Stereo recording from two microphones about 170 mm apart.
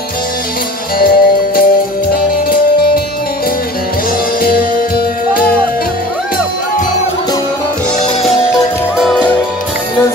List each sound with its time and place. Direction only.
0.9 s music: 60° left (ahead or behind)
4.4 s music: 60° left (ahead or behind)
8.9 s music: 5° right (ahead or behind)